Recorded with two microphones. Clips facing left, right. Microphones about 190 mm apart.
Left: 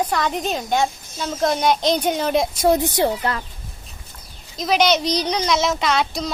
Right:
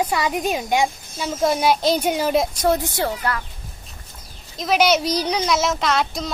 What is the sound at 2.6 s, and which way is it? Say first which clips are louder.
Speech: left 3 dB; 20° left (ahead or behind).